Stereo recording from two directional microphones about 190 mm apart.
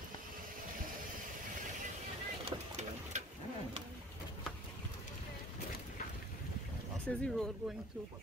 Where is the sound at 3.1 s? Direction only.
40° right (ahead or behind).